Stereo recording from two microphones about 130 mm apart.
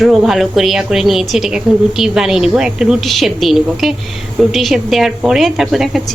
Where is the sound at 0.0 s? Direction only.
Centre (ahead or behind).